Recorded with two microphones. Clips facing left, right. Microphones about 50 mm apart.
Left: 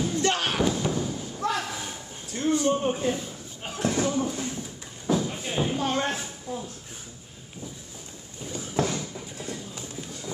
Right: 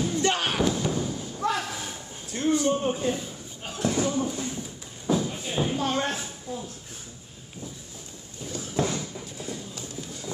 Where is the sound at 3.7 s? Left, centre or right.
Left.